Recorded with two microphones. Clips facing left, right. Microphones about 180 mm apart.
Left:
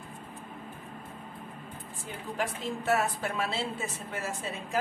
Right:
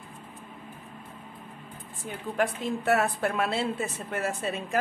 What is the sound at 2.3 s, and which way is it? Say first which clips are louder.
A woman's voice: right 5 dB; 55° right (ahead or behind).